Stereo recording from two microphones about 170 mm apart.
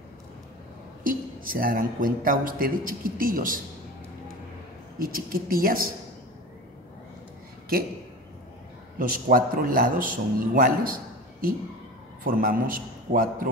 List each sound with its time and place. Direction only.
1.0 s speech: 55° right (ahead or behind)
4.9 s speech: 60° right (ahead or behind)
8.9 s speech: 55° right (ahead or behind)
12.2 s speech: 55° right (ahead or behind)